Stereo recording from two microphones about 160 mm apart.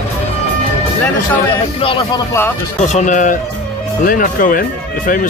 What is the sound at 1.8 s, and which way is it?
Speech, 30° left (ahead or behind).